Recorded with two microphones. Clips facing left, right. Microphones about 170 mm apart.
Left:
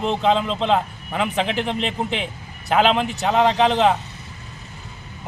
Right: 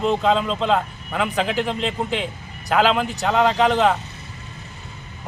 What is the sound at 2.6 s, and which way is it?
A man's voice, 25° left (ahead or behind).